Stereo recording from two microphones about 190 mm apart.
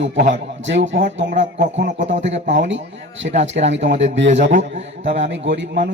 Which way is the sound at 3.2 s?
55° right (ahead or behind).